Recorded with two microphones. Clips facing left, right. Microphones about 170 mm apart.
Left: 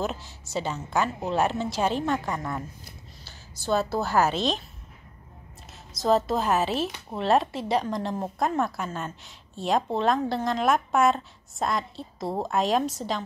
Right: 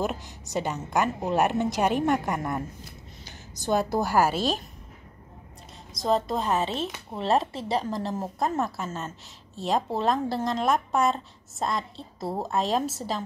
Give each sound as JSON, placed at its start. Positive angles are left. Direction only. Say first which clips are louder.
{"t": 0.0, "sound": "a woman's voice", "louder": "right 1 dB", "side_deg": -15}
{"t": 5.9, "sound": "speech", "louder": "left 2 dB", "side_deg": 0}